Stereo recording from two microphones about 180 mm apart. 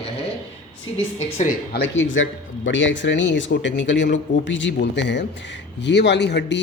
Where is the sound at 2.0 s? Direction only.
90° left.